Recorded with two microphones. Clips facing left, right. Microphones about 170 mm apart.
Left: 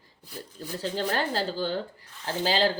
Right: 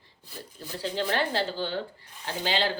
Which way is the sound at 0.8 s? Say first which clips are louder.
Even; 40° left (ahead or behind).